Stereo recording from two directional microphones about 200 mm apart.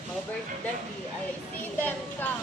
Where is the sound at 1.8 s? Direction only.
10° left (ahead or behind).